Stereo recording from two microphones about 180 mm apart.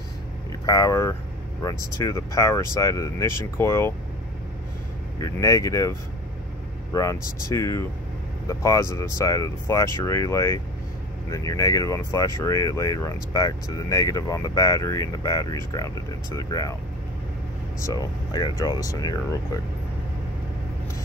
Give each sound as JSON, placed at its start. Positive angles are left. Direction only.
{"t": 0.7, "sound": "speech", "side_deg": 20}
{"t": 5.2, "sound": "speech", "side_deg": 20}
{"t": 17.8, "sound": "speech", "side_deg": 20}